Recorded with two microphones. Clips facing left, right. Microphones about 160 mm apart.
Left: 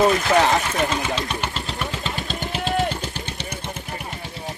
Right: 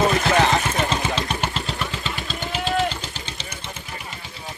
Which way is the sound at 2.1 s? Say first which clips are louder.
Left 1 dB; 50° left (ahead or behind).